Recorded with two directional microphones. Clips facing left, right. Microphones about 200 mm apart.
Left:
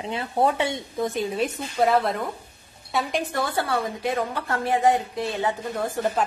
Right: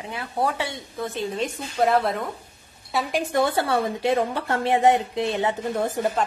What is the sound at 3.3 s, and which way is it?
A woman's voice, 25° right (ahead or behind).